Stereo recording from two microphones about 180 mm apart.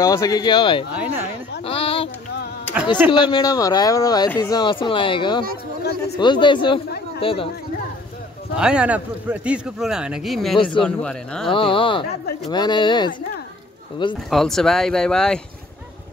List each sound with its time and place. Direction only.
0.0 s speech: 20° left (ahead or behind)
1.6 s a sound: 30° left (ahead or behind)
3.1 s speech: 25° left (ahead or behind)
5.9 s a man's voice: 65° left (ahead or behind)
6.2 s speech: 25° left (ahead or behind)
8.5 s a man's voice: 5° right (ahead or behind)
11.5 s speech: 30° left (ahead or behind)
14.3 s a man's voice: centre (ahead or behind)